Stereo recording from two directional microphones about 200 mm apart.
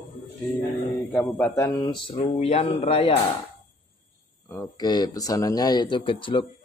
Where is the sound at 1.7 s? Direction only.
25° left (ahead or behind).